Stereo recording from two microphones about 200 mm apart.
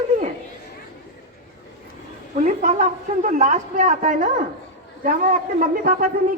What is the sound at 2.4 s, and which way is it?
A woman's voice, 40° right (ahead or behind).